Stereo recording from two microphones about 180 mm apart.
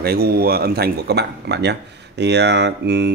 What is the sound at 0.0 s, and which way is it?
Speech, 60° right (ahead or behind).